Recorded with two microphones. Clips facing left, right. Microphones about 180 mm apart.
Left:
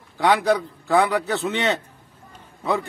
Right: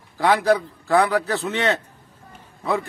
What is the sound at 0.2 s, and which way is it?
A man's voice, centre (ahead or behind).